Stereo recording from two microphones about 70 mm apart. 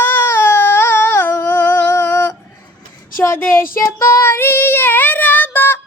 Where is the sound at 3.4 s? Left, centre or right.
Left.